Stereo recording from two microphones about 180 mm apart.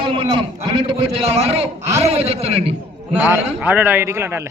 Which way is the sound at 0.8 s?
35° right (ahead or behind).